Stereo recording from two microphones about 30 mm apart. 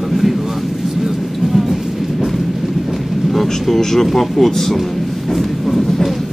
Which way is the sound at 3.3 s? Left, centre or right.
Centre.